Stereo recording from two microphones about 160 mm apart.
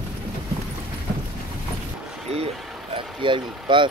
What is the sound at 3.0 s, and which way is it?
Speech, 30° right (ahead or behind).